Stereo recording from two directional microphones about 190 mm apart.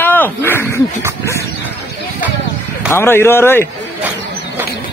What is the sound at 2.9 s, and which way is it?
Speech, 10° left (ahead or behind).